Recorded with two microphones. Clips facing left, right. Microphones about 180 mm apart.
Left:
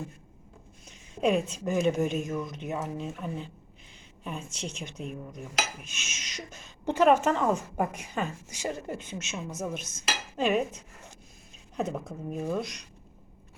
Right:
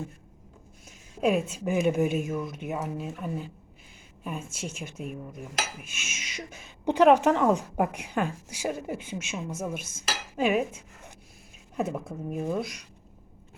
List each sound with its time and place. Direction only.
0.9 s a woman's voice: 5° right (ahead or behind)
6.0 s speech: 50° right (ahead or behind)
6.2 s speech: 10° right (ahead or behind)
11.8 s speech: 5° right (ahead or behind)